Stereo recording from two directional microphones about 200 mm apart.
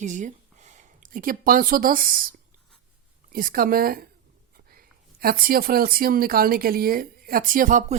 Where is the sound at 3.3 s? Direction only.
45° right (ahead or behind).